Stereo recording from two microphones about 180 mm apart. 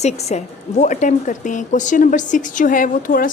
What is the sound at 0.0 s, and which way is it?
A woman's voice, 40° left (ahead or behind).